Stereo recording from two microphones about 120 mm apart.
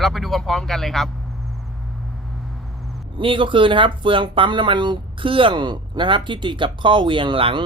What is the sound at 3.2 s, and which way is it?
Speech, 45° right (ahead or behind).